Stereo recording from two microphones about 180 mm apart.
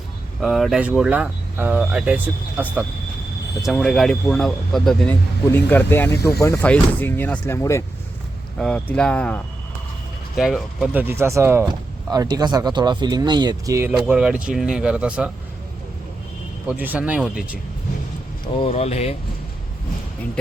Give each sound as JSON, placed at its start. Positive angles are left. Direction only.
{"t": 0.4, "sound": "speech", "side_deg": 0}
{"t": 3.6, "sound": "speech", "side_deg": 0}
{"t": 6.1, "sound": "speech", "side_deg": 60}
{"t": 6.4, "sound": "speech", "side_deg": 15}
{"t": 8.5, "sound": "speech", "side_deg": 5}
{"t": 13.9, "sound": "speech", "side_deg": -5}
{"t": 16.6, "sound": "speech", "side_deg": -10}
{"t": 18.6, "sound": "speech", "side_deg": 35}